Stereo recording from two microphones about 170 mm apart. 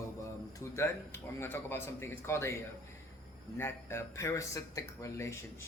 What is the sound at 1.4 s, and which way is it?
Speech, 15° left (ahead or behind).